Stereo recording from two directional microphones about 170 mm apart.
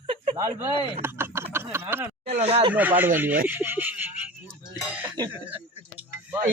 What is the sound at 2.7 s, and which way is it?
Speech, 10° right (ahead or behind).